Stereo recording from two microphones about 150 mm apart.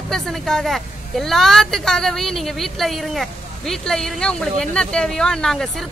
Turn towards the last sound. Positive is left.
turn(degrees=0)  # may be behind; listen again after turning